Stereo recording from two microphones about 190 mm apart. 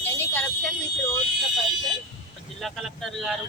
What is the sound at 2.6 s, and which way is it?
Speech, centre (ahead or behind).